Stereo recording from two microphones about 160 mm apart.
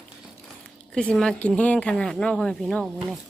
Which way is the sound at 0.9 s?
5° left (ahead or behind).